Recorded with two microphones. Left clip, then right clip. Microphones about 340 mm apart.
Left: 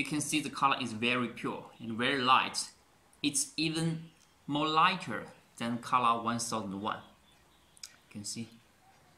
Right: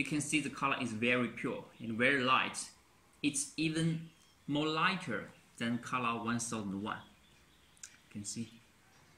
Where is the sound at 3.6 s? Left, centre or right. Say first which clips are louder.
Left 2 dB; centre.